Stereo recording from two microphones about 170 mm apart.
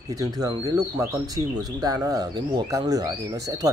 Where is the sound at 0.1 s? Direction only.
20° right (ahead or behind).